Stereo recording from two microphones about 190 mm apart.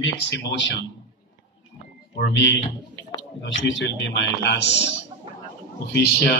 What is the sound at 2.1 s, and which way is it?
A man's voice, 70° left (ahead or behind).